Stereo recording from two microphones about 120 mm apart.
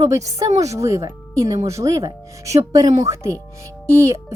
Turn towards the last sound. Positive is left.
turn(degrees=-25)  # may be behind; listen again after turning